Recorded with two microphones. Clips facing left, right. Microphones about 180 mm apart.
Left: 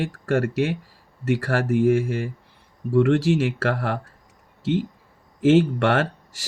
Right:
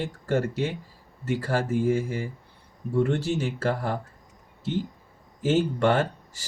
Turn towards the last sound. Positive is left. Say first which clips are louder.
# left 2 dB
turn(degrees=80)